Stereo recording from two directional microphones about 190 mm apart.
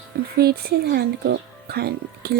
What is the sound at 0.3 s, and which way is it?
Speech, 55° right (ahead or behind).